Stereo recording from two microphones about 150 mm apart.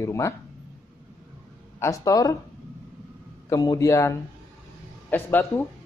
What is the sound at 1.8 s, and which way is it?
Speech, 20° left (ahead or behind).